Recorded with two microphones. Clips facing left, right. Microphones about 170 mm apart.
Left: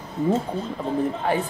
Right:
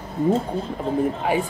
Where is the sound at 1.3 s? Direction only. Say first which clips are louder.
Right 1 dB; 10° right (ahead or behind).